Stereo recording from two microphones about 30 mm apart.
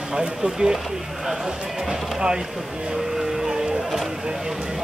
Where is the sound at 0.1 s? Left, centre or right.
Right.